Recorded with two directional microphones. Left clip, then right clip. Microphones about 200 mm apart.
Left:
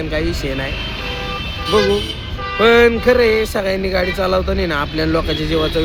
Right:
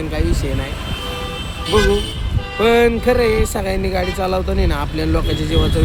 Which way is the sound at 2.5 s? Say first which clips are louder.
Left 3 dB; 5° right (ahead or behind).